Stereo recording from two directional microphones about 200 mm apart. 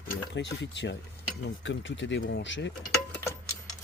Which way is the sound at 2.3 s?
65° left (ahead or behind).